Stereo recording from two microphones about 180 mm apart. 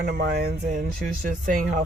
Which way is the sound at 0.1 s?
65° right (ahead or behind).